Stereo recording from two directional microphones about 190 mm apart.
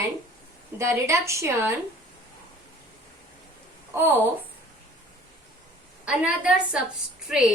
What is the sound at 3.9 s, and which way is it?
Speech, 10° right (ahead or behind).